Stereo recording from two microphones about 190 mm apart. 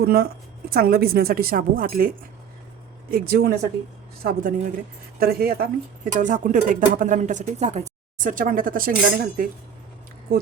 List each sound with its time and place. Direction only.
0.0 s speech: 55° right (ahead or behind)
6.1 s speech: 40° right (ahead or behind)